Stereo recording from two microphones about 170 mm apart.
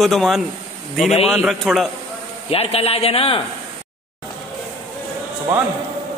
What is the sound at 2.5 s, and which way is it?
Speech, 35° left (ahead or behind).